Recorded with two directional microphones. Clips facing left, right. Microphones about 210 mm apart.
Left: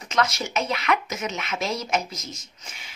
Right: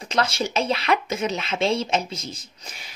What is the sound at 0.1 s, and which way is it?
Speech, 30° right (ahead or behind).